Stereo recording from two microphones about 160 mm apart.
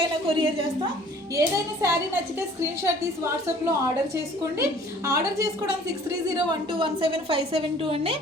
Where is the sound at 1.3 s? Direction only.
20° right (ahead or behind).